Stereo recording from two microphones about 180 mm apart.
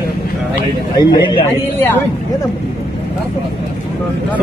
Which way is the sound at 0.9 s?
25° left (ahead or behind).